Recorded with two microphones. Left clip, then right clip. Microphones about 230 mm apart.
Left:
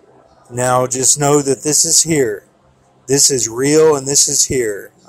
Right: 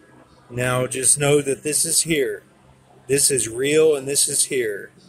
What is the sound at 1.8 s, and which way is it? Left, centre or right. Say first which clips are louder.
Speech: left 10 dB; centre.